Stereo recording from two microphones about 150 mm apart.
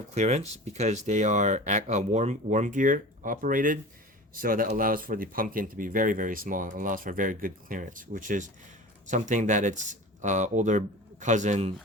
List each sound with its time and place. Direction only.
0.1 s speech: 50° right (ahead or behind)